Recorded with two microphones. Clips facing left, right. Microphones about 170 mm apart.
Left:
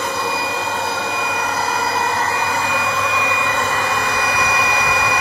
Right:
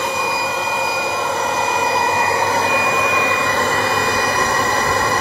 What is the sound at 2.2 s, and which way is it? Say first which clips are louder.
Vacuum cleaner: right 3 dB; 40° right (ahead or behind).